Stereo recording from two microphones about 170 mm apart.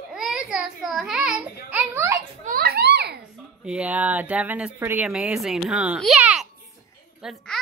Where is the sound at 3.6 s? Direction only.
5° right (ahead or behind).